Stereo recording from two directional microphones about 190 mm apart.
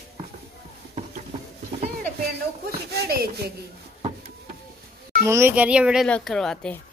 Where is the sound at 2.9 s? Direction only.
55° right (ahead or behind).